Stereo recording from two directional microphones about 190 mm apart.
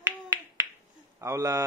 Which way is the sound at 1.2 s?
15° right (ahead or behind).